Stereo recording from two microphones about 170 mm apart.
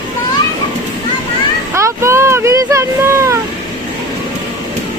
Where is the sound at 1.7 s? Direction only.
15° right (ahead or behind).